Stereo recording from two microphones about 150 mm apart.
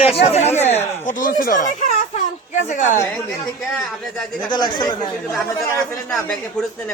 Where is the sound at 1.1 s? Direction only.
60° left (ahead or behind).